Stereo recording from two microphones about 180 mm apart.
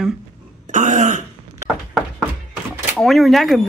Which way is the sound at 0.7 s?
40° right (ahead or behind).